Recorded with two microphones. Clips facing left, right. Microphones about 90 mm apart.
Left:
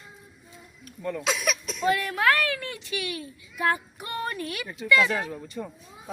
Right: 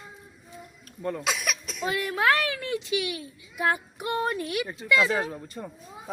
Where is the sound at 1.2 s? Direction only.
5° right (ahead or behind).